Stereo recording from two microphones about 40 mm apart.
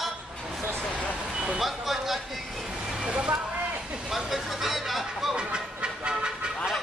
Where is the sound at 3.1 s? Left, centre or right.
Right.